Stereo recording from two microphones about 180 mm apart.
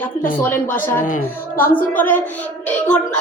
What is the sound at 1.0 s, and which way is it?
Speech, 50° left (ahead or behind).